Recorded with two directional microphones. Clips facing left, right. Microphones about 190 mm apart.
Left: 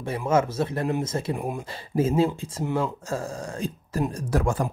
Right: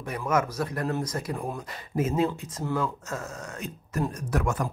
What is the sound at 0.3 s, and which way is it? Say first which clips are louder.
Speech: left 4 dB; 25° left (ahead or behind).